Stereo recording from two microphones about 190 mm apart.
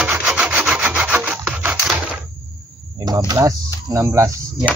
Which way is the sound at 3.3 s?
15° right (ahead or behind).